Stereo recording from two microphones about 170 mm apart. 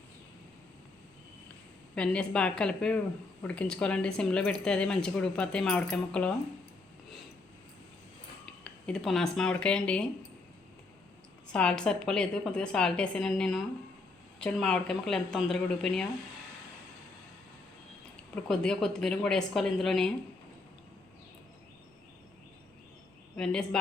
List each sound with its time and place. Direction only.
2.0 s speech: 5° left (ahead or behind)
8.6 s speech: 5° left (ahead or behind)
11.4 s speech: 5° left (ahead or behind)
18.4 s speech: 5° left (ahead or behind)
23.4 s speech: 5° left (ahead or behind)